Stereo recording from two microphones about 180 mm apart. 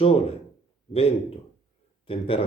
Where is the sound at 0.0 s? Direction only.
35° left (ahead or behind).